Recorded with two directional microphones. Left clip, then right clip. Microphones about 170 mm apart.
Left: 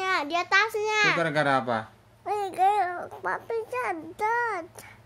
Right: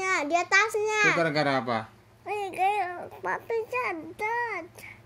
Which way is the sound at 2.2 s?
15° left (ahead or behind).